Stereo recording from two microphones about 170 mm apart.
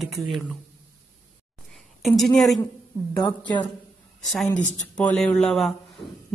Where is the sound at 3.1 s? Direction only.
25° left (ahead or behind).